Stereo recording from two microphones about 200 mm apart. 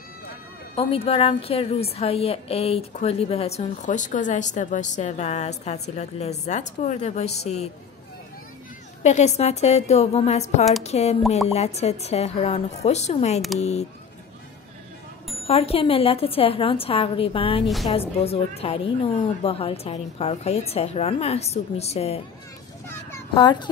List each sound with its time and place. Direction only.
0.7 s a woman's voice: 30° left (ahead or behind)
9.0 s a woman's voice: 35° left (ahead or behind)
15.4 s a woman's voice: 30° left (ahead or behind)
23.3 s a woman's voice: 20° left (ahead or behind)